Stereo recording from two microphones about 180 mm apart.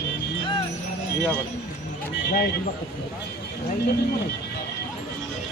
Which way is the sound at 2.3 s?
60° left (ahead or behind).